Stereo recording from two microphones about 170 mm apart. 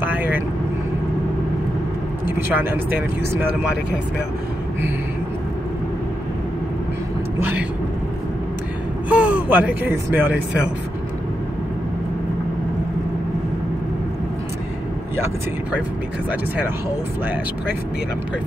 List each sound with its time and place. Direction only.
0.0 s vehicle: 10° right (ahead or behind)
2.2 s speech: 10° right (ahead or behind)
7.3 s speech: 10° right (ahead or behind)
9.1 s speech: 5° right (ahead or behind)